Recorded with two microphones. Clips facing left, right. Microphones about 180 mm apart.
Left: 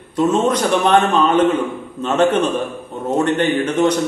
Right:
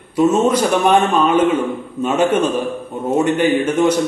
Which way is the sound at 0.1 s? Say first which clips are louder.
Right 2 dB; 10° right (ahead or behind).